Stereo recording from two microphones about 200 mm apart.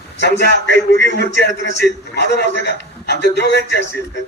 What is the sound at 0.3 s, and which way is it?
A man's voice, 60° left (ahead or behind).